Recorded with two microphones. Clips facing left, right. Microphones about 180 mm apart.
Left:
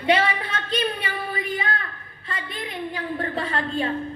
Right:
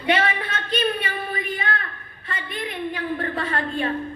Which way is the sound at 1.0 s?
25° left (ahead or behind).